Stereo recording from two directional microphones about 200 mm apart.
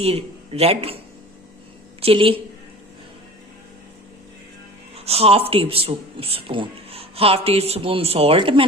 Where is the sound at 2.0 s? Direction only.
25° right (ahead or behind).